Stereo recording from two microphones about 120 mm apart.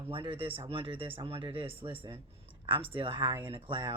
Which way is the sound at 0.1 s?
45° right (ahead or behind).